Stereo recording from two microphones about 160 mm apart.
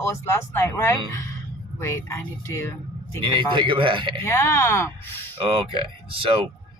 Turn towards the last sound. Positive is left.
turn(degrees=-35)  # may be behind; listen again after turning